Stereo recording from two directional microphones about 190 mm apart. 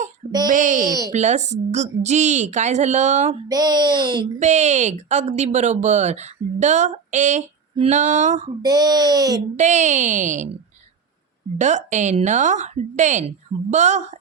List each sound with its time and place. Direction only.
0.3 s speech: 20° right (ahead or behind)
0.5 s speech: 40° right (ahead or behind)
0.9 s speech: 20° right (ahead or behind)
1.1 s speech: 40° right (ahead or behind)
3.5 s speech: 20° right (ahead or behind)
4.4 s speech: 35° right (ahead or behind)
8.6 s speech: 20° right (ahead or behind)
9.6 s speech: 40° right (ahead or behind)
11.5 s speech: 40° right (ahead or behind)